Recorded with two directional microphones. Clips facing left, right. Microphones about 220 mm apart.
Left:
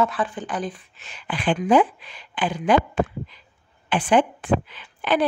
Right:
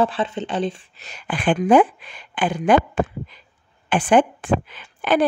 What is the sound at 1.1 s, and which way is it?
A woman's voice, 45° right (ahead or behind).